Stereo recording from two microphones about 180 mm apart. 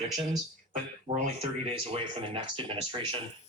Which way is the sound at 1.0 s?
35° right (ahead or behind).